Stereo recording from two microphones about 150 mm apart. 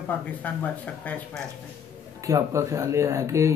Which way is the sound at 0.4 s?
10° left (ahead or behind).